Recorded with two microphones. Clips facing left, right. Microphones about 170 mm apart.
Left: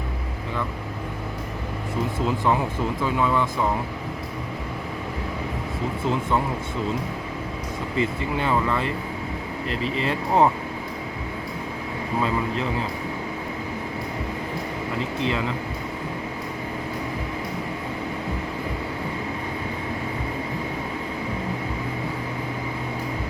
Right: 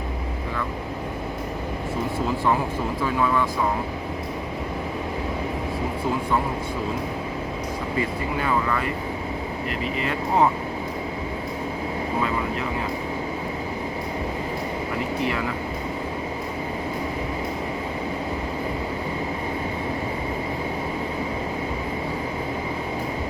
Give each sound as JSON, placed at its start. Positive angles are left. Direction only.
{"t": 7.9, "sound": "speech", "side_deg": 25}
{"t": 15.2, "sound": "speech", "side_deg": 20}